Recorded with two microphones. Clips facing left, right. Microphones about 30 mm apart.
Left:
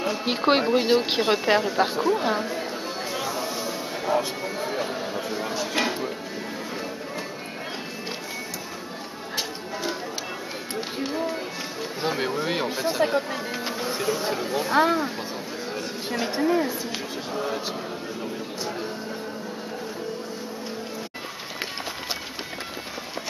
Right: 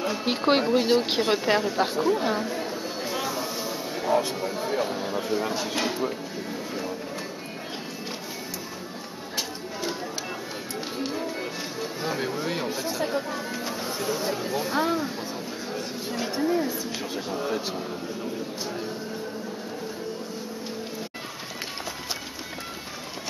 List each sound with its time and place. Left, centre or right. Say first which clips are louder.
0.0 s speech: left 1 dB; centre
3.1 s a sound: even; centre
3.9 s speech: right 1 dB; centre
11.0 s music: left 3 dB; centre
12.0 s speech: left 4 dB; left
17.3 s speech: left 1 dB; centre